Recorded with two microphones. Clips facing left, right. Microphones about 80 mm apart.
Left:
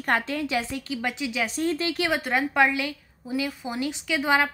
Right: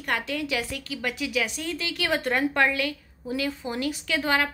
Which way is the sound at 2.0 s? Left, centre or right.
Centre.